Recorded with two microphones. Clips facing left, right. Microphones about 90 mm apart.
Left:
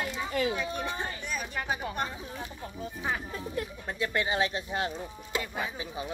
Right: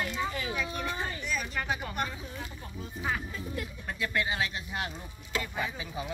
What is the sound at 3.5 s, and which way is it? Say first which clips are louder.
A woman's voice: left 4 dB; 30° left (ahead or behind).